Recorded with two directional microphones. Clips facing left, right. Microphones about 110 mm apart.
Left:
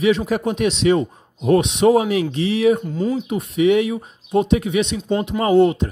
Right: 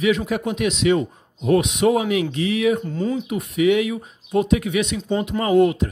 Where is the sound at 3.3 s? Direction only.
30° left (ahead or behind).